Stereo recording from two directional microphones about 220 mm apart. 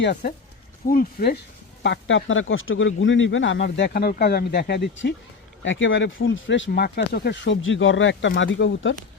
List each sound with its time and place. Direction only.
0.9 s speech: 45° left (ahead or behind)
1.8 s speech: 55° left (ahead or behind)